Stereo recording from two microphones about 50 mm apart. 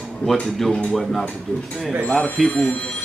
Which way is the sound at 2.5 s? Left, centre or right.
Left.